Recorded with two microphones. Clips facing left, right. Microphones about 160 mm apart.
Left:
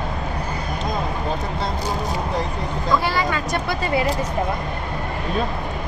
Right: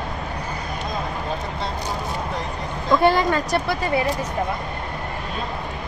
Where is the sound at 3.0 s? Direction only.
50° right (ahead or behind).